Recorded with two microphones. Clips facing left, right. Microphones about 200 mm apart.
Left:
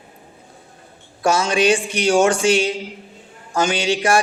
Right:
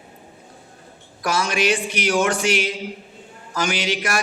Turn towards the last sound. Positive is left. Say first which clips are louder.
# left 6 dB
turn(degrees=30)  # may be behind; listen again after turning